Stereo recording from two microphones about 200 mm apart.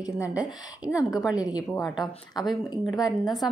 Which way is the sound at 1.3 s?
5° right (ahead or behind).